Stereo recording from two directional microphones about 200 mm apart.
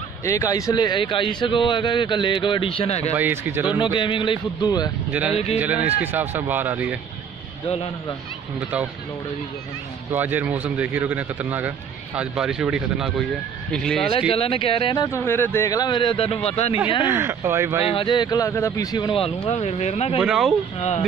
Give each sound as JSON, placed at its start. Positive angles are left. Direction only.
{"t": 0.2, "sound": "a man's voice", "side_deg": 15}
{"t": 3.2, "sound": "speech", "side_deg": -10}
{"t": 3.6, "sound": "a man's voice", "side_deg": 25}
{"t": 5.1, "sound": "speech", "side_deg": -10}
{"t": 7.6, "sound": "a man's voice", "side_deg": 30}
{"t": 10.1, "sound": "speech", "side_deg": -10}
{"t": 14.3, "sound": "a man's voice", "side_deg": 30}
{"t": 17.0, "sound": "speech", "side_deg": -10}
{"t": 17.8, "sound": "a man's voice", "side_deg": 25}
{"t": 20.2, "sound": "speech", "side_deg": -5}